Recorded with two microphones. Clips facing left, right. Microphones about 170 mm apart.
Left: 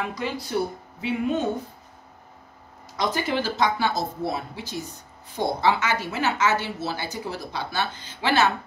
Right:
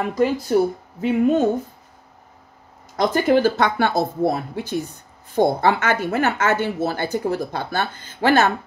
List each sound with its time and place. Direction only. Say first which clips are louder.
0.0 s a woman's voice: right 9 dB; 45° right (ahead or behind)
3.0 s a woman's voice: right 9 dB; 50° right (ahead or behind)